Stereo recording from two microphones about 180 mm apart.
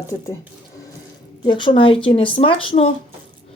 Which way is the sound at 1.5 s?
25° left (ahead or behind).